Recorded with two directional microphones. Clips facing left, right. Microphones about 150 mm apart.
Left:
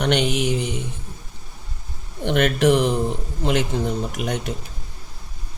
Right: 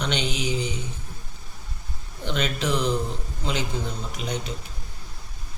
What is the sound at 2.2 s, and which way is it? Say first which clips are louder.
Speech: left 9 dB; 65° left (ahead or behind).